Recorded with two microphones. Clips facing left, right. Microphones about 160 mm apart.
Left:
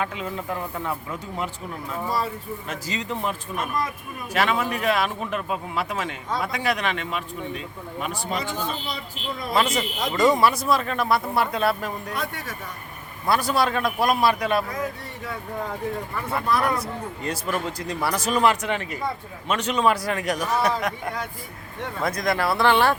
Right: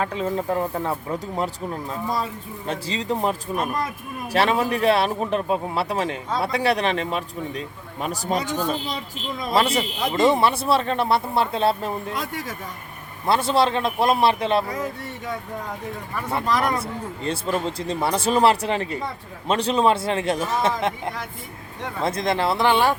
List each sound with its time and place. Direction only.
0.0 s speech: 35° right (ahead or behind)
2.6 s speech: 30° right (ahead or behind)
13.2 s speech: 25° right (ahead or behind)
16.6 s speech: 25° right (ahead or behind)